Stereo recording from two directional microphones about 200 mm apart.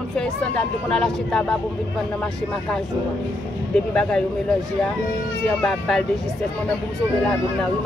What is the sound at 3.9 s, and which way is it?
Speech, 5° left (ahead or behind).